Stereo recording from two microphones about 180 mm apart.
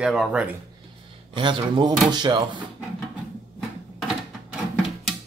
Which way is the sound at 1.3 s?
25° right (ahead or behind).